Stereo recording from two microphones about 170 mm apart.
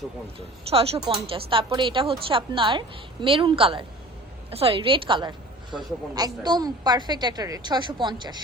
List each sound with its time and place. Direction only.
0.3 s a woman's voice: 35° right (ahead or behind)